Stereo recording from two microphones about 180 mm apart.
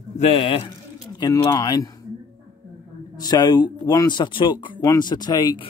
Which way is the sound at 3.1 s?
20° left (ahead or behind).